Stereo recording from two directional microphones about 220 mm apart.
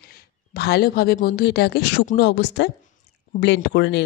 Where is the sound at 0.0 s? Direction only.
40° left (ahead or behind).